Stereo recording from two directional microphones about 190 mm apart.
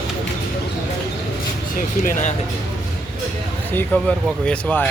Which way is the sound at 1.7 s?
45° left (ahead or behind).